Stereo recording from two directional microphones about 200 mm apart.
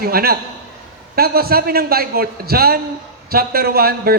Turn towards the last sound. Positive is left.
turn(degrees=-50)  # may be behind; listen again after turning